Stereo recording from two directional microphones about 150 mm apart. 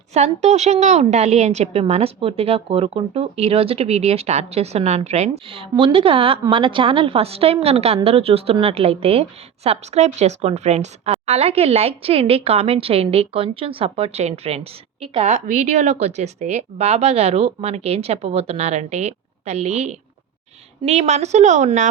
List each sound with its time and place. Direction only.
0.1 s a woman's voice: 50° right (ahead or behind)